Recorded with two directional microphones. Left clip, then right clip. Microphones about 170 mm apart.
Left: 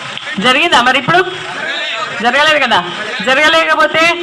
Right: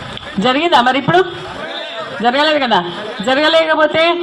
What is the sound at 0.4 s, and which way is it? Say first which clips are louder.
Speech: left 3 dB; 45° right (ahead or behind).